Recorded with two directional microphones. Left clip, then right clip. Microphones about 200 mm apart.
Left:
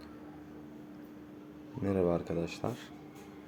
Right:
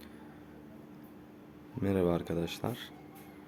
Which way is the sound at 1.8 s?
20° right (ahead or behind).